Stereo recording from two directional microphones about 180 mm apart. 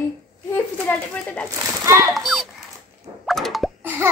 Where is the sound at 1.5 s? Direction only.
15° right (ahead or behind).